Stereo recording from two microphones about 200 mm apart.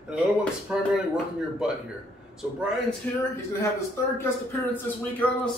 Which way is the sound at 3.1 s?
10° left (ahead or behind).